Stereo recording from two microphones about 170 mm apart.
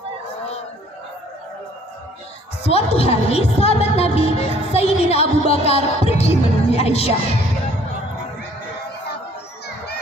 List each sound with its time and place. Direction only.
2.6 s a woman's voice: 40° left (ahead or behind)